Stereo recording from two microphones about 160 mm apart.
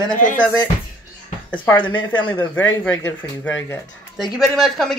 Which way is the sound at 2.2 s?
10° left (ahead or behind).